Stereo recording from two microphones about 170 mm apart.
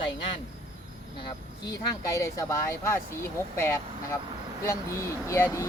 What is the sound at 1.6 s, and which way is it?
Speech, 20° left (ahead or behind).